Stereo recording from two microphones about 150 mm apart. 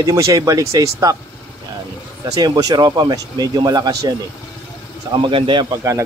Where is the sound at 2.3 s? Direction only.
25° right (ahead or behind).